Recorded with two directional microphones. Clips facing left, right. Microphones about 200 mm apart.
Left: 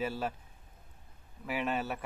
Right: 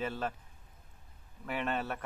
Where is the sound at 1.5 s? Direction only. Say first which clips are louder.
Left 1 dB; 5° left (ahead or behind).